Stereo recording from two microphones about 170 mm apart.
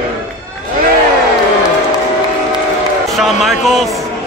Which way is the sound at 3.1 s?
Centre (ahead or behind).